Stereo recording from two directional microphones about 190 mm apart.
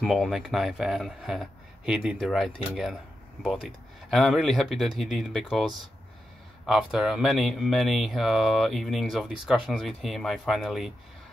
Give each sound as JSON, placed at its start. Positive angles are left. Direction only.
{"t": 0.0, "sound": "speech", "side_deg": 0}